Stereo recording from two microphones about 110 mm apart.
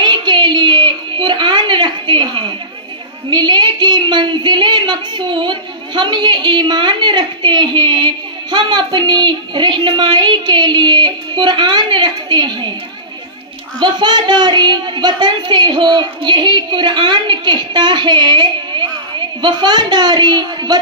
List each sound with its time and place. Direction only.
0.0 s a sound: 45° right (ahead or behind)
3.3 s a woman's voice: 40° right (ahead or behind)
13.7 s a woman's voice: 40° right (ahead or behind)